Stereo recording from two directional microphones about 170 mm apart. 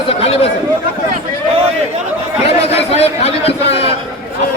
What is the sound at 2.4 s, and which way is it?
A man's voice, 35° left (ahead or behind).